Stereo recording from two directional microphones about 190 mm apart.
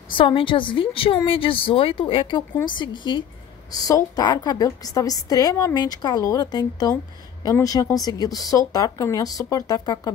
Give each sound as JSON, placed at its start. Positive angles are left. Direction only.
{"t": 0.2, "sound": "a woman's voice", "side_deg": 25}